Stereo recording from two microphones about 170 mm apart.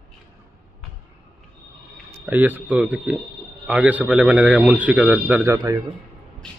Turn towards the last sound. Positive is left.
turn(degrees=-20)  # may be behind; listen again after turning